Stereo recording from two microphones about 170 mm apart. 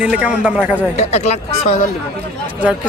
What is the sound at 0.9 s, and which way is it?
Speech, 40° left (ahead or behind).